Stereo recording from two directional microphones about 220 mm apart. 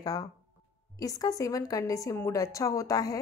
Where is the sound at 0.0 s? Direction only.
15° left (ahead or behind).